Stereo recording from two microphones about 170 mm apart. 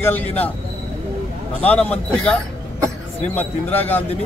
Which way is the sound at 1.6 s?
5° left (ahead or behind).